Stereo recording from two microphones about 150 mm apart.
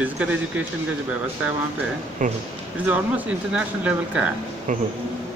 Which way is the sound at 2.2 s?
60° right (ahead or behind).